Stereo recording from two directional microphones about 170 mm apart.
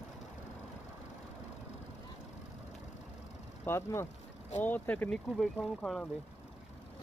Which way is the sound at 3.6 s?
15° left (ahead or behind).